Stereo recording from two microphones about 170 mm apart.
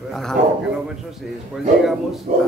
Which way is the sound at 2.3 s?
50° right (ahead or behind).